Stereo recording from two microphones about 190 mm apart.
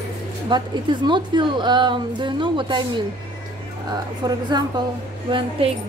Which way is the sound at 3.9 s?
20° right (ahead or behind).